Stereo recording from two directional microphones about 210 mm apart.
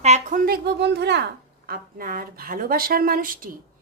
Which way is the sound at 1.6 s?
45° right (ahead or behind).